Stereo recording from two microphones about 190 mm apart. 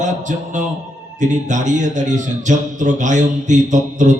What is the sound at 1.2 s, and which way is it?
A man's voice, 40° right (ahead or behind).